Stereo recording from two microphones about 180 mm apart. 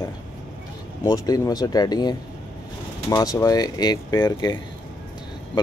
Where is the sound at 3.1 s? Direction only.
20° left (ahead or behind).